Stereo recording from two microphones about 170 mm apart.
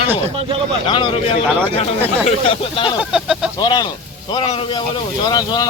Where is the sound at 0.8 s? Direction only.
30° left (ahead or behind).